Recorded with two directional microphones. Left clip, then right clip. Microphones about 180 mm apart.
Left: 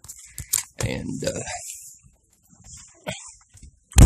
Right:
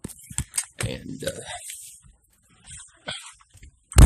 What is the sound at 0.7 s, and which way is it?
Speech, 35° left (ahead or behind).